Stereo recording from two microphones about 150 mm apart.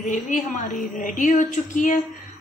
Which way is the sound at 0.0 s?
60° left (ahead or behind).